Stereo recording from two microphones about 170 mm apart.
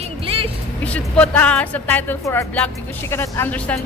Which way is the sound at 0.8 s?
5° left (ahead or behind).